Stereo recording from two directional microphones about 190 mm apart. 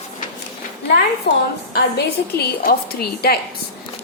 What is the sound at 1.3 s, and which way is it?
A woman's voice, 60° left (ahead or behind).